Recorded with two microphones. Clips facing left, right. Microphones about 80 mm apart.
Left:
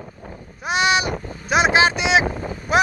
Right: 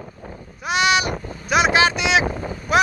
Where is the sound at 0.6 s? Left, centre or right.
Left.